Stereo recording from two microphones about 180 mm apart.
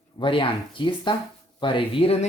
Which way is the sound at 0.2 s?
30° left (ahead or behind).